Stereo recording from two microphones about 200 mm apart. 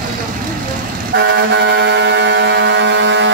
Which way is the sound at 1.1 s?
60° right (ahead or behind).